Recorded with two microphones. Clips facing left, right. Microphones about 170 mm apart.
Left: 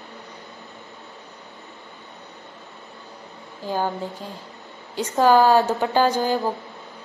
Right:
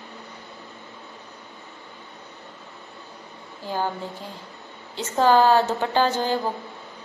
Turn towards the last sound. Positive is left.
turn(degrees=10)  # may be behind; listen again after turning